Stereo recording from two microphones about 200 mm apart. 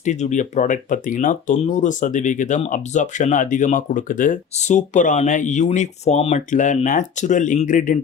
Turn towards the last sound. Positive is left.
turn(degrees=40)  # may be behind; listen again after turning